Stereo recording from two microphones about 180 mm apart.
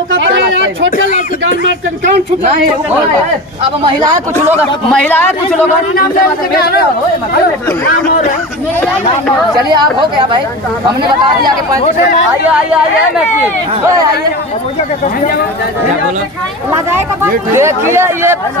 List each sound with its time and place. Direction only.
0.3 s a sound: 90° right
0.9 s speech: 50° left (ahead or behind)
4.9 s a man's voice: 10° left (ahead or behind)
9.7 s speech: 25° right (ahead or behind)
16.7 s speech: 15° right (ahead or behind)